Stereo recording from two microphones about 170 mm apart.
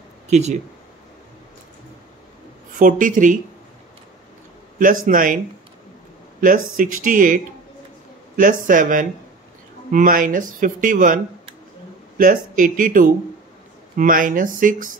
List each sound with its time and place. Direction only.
0.3 s speech: 40° right (ahead or behind)
2.8 s speech: 50° right (ahead or behind)
4.7 s speech: 55° right (ahead or behind)
6.4 s speech: 55° right (ahead or behind)
12.2 s speech: 55° right (ahead or behind)